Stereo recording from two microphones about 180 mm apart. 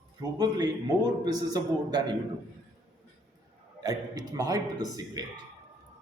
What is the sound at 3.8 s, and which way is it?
A man's voice, 20° right (ahead or behind).